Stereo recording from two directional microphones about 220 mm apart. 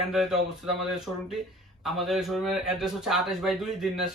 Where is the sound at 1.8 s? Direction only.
Centre (ahead or behind).